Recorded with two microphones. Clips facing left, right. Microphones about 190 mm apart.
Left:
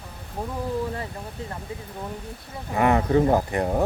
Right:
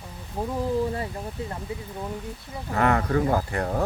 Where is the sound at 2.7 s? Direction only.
15° left (ahead or behind).